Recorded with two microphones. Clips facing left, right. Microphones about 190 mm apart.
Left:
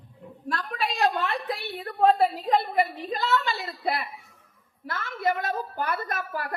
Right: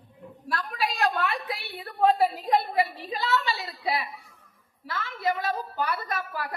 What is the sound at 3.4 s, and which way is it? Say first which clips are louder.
A woman's voice: left 1 dB; 50° left (ahead or behind).